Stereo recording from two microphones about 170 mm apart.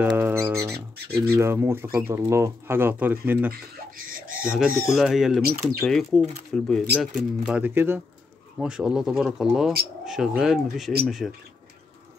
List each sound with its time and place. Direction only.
0.0 s music: 15° right (ahead or behind)
1.3 s speech: 15° right (ahead or behind)
3.9 s speech: 55° right (ahead or behind)
4.4 s speech: 5° right (ahead or behind)
7.4 s speech: 10° right (ahead or behind)